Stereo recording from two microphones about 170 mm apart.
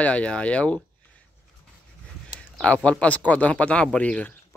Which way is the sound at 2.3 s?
5° left (ahead or behind).